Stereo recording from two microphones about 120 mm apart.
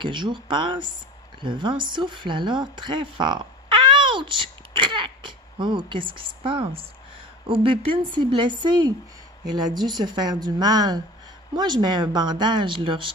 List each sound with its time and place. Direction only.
0.0 s a woman's voice: 40° right (ahead or behind)